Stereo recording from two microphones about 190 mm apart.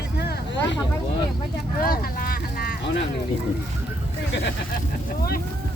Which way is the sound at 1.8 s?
50° left (ahead or behind).